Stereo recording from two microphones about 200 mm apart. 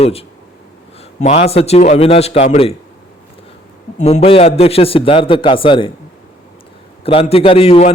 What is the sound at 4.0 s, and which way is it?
A man's voice, 30° left (ahead or behind).